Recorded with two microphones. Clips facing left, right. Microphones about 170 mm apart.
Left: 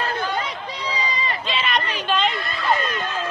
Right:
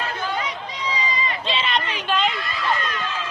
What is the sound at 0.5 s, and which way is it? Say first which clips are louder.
Run: even; 35° left (ahead or behind).